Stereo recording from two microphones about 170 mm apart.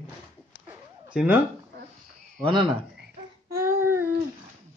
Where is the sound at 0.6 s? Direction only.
5° right (ahead or behind).